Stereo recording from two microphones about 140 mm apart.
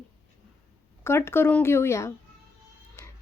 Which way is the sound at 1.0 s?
15° left (ahead or behind).